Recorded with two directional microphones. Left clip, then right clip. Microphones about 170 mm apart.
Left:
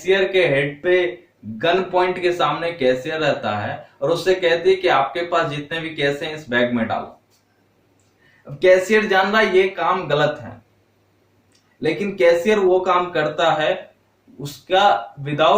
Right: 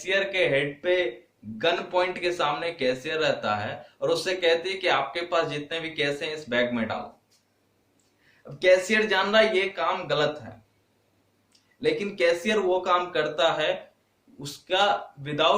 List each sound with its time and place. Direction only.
0.0 s speech: 20° right (ahead or behind)
8.5 s speech: 15° right (ahead or behind)
11.8 s speech: 15° right (ahead or behind)